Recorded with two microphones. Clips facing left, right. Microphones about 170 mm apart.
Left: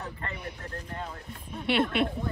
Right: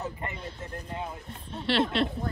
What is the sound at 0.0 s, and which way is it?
Vehicle, 20° right (ahead or behind).